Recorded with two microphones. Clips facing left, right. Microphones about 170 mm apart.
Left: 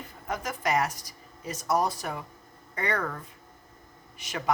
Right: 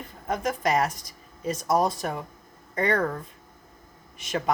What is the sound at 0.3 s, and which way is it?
Speech, 25° right (ahead or behind).